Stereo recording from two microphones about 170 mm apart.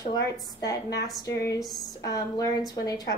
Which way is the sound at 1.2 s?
20° left (ahead or behind).